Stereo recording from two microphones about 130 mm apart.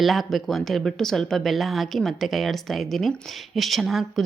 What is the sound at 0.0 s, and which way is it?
Speech, centre (ahead or behind).